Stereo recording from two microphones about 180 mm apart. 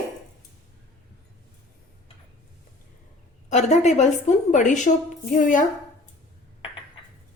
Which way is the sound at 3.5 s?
40° left (ahead or behind).